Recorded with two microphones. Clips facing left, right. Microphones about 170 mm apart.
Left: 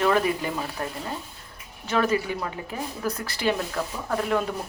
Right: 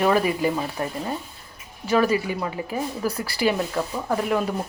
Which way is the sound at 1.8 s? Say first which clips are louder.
Right 3 dB; 10° right (ahead or behind).